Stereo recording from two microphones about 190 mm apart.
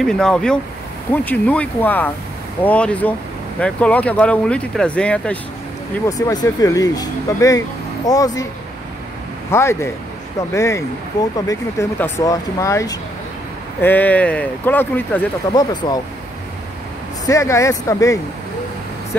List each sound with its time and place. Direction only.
0.0 s speech: 5° left (ahead or behind)
6.0 s speech: 20° left (ahead or behind)
9.5 s speech: 15° left (ahead or behind)
15.5 s speech: 20° left (ahead or behind)
17.3 s speech: 15° left (ahead or behind)